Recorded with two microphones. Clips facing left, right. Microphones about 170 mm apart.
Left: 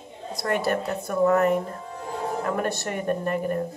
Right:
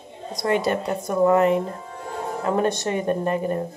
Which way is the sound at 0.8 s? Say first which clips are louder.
Right 3 dB; 20° right (ahead or behind).